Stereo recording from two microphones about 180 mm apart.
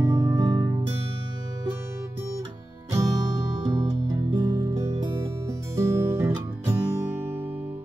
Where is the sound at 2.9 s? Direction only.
20° right (ahead or behind).